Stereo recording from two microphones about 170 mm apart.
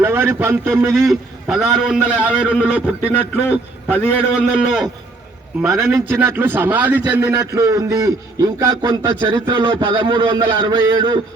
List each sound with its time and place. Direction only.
0.0 s a man's voice: 15° right (ahead or behind)
0.9 s a man's voice: centre (ahead or behind)
3.3 s a man's voice: 10° left (ahead or behind)
4.1 s a man's voice: 5° right (ahead or behind)
5.8 s a man's voice: 15° right (ahead or behind)